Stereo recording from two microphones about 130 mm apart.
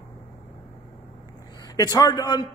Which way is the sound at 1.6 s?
30° left (ahead or behind).